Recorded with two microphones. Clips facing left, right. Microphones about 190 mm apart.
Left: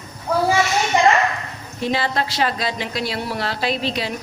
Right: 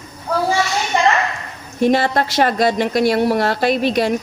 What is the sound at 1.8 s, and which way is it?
Speech, 55° right (ahead or behind).